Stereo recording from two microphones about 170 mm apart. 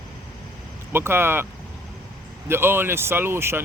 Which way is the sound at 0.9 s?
15° right (ahead or behind).